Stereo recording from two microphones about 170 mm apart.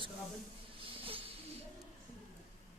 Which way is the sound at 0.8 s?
30° right (ahead or behind).